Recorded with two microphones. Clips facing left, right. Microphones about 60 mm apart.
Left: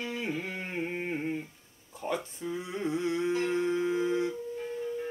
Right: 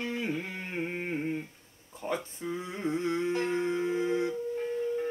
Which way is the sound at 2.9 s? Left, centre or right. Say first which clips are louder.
Even; right.